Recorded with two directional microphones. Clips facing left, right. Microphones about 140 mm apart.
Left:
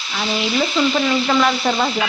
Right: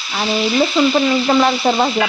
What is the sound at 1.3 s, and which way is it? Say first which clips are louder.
Frying: right 3 dB; 30° right (ahead or behind).